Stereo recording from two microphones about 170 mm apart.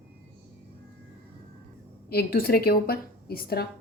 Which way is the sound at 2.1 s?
65° left (ahead or behind).